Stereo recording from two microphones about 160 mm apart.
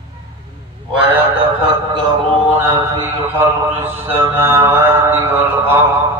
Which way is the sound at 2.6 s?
15° right (ahead or behind).